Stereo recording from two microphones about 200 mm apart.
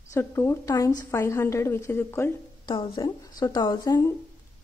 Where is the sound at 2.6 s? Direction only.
25° left (ahead or behind).